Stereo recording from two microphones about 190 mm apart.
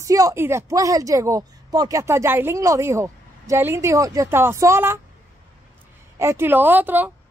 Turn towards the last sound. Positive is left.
turn(degrees=-10)  # may be behind; listen again after turning